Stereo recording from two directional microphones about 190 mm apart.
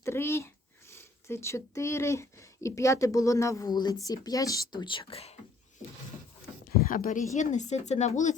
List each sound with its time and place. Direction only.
0.0 s speech: 15° left (ahead or behind); by 5.3 s 30° left (ahead or behind)
6.7 s speech: 50° left (ahead or behind)